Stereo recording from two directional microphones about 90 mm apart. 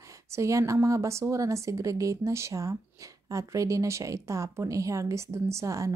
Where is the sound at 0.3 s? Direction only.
35° right (ahead or behind).